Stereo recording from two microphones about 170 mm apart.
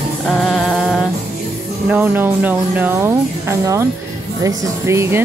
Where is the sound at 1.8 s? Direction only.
10° right (ahead or behind).